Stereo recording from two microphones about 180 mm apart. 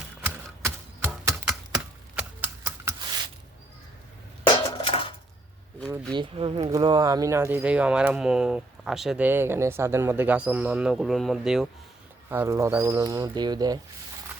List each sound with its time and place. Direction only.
0.2 s typewriter: 10° right (ahead or behind)
2.1 s a sound: 10° right (ahead or behind)
4.4 s dishes: 25° left (ahead or behind)
6.1 s speech: 30° right (ahead or behind); by 11.7 s centre (ahead or behind)
12.3 s speech: 15° right (ahead or behind)